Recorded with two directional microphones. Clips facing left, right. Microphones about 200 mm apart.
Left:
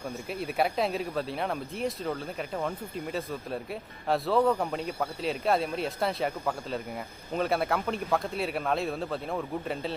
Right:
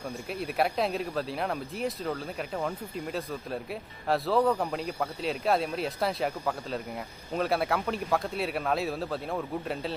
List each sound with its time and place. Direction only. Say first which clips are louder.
0.3 s speech: even; centre (ahead or behind)